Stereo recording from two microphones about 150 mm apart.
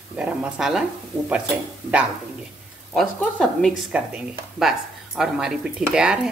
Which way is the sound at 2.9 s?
Centre (ahead or behind).